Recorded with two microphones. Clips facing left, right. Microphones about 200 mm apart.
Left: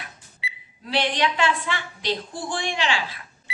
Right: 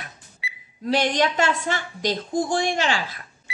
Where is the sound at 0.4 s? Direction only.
25° left (ahead or behind).